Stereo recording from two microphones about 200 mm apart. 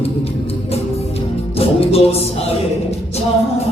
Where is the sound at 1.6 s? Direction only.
30° left (ahead or behind).